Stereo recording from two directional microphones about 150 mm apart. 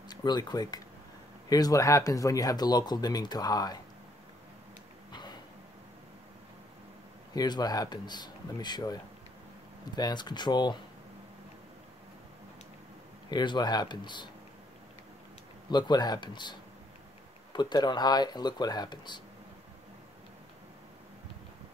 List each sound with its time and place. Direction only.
0.1 s speech: 30° left (ahead or behind)
7.3 s speech: 25° left (ahead or behind)
9.9 s speech: 25° left (ahead or behind)
13.3 s speech: 30° left (ahead or behind)
15.7 s speech: 30° left (ahead or behind)